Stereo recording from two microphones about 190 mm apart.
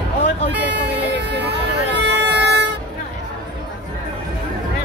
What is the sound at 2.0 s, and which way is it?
Music, 65° right (ahead or behind).